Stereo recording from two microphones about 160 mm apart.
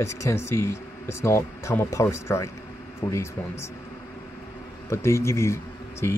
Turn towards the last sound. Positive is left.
turn(degrees=15)  # may be behind; listen again after turning